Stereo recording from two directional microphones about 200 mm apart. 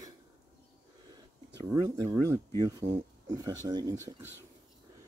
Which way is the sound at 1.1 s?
20° right (ahead or behind).